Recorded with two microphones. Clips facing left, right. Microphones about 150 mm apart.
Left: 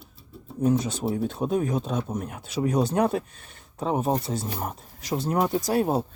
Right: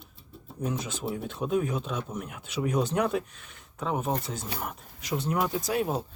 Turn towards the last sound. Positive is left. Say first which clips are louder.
# left 5 dB
turn(degrees=40)  # may be behind; listen again after turning